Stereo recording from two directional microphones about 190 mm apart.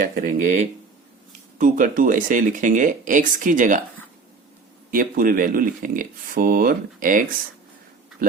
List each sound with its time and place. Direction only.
0.0 s speech: 45° right (ahead or behind)
4.9 s speech: 45° right (ahead or behind)